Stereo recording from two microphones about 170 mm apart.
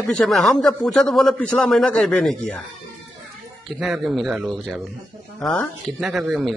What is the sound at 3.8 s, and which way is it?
A man's voice, centre (ahead or behind).